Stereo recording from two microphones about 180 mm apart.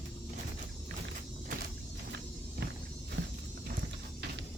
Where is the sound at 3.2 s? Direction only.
90° right.